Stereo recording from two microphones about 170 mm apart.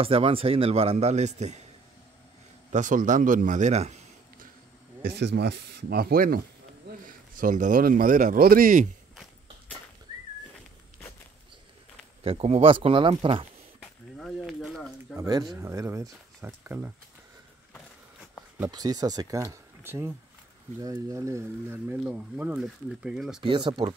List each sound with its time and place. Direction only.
0.0 s a man's voice: 35° right (ahead or behind)
2.7 s a man's voice: 50° right (ahead or behind)
5.1 s a man's voice: 80° right; by 8.9 s 50° right (ahead or behind)
9.1 s walk: centre (ahead or behind)
12.2 s a man's voice: 35° right (ahead or behind)
13.7 s a sound: centre (ahead or behind)
15.1 s speech: 25° right (ahead or behind)
18.7 s speech: 20° right (ahead or behind); by 23.4 s 5° right (ahead or behind)
23.4 s speech: 25° right (ahead or behind)